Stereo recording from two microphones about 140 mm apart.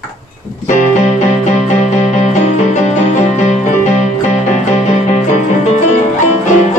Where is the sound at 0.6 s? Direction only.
60° left (ahead or behind).